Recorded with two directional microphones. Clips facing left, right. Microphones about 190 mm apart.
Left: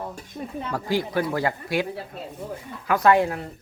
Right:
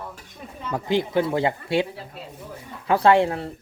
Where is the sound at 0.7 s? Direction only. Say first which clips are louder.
Right 3 dB; 20° right (ahead or behind).